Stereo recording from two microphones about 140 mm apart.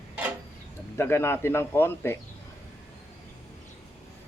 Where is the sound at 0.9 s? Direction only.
20° left (ahead or behind).